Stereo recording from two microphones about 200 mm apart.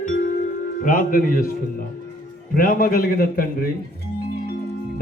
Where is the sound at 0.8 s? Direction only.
45° left (ahead or behind).